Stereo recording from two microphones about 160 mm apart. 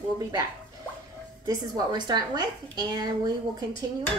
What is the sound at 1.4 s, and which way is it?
A woman's voice, 25° right (ahead or behind).